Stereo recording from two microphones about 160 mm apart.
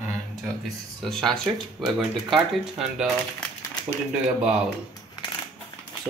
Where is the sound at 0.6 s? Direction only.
Centre (ahead or behind).